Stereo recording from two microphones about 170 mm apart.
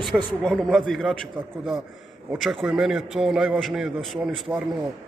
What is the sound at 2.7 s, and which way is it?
A man's voice, centre (ahead or behind).